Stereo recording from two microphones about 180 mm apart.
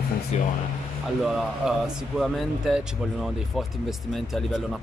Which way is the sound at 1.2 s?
5° right (ahead or behind).